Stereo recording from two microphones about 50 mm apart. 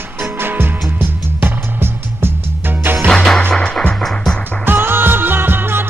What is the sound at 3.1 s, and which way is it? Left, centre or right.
Music, centre.